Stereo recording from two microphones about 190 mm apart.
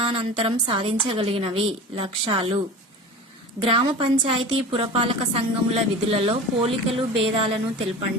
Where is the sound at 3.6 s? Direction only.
25° right (ahead or behind).